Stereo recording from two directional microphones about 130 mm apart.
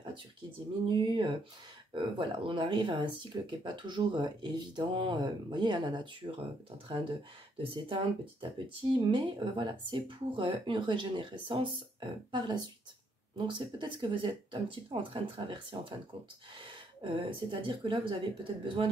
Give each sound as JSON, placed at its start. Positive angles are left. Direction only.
{"t": 0.8, "sound": "speech", "side_deg": -40}
{"t": 7.6, "sound": "speech", "side_deg": -40}